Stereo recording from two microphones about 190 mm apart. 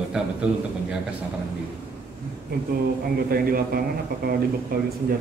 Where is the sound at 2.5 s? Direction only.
55° right (ahead or behind).